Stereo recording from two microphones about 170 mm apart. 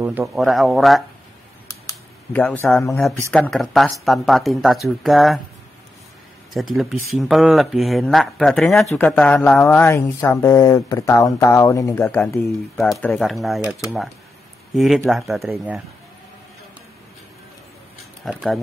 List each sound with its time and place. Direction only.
0.0 s speech: 10° right (ahead or behind)
0.3 s speech: centre (ahead or behind)
1.7 s a sound: 15° left (ahead or behind)
3.3 s speech: 5° left (ahead or behind)
6.5 s speech: centre (ahead or behind)
12.7 s speech: centre (ahead or behind)
15.0 s speech: centre (ahead or behind)
18.2 s speech: centre (ahead or behind)